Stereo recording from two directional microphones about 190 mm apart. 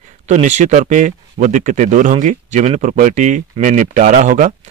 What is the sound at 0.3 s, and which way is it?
Speech, 40° right (ahead or behind).